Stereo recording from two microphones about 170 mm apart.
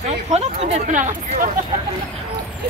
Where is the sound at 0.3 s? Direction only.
40° right (ahead or behind).